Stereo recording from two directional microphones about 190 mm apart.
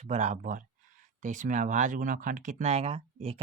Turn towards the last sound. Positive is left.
turn(degrees=-30)  # may be behind; listen again after turning